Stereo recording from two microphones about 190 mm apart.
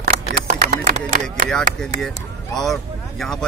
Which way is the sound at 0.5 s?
40° right (ahead or behind).